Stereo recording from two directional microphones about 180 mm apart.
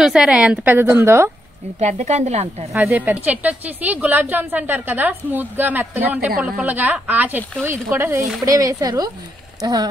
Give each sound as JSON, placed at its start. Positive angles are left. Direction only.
{"t": 0.0, "sound": "a woman's voice", "side_deg": -5}
{"t": 1.8, "sound": "a woman's voice", "side_deg": -40}
{"t": 2.7, "sound": "a woman's voice", "side_deg": -10}